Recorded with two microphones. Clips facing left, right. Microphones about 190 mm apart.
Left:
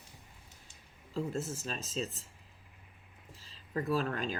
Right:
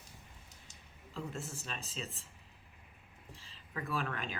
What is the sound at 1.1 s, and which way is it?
Speech, 40° left (ahead or behind).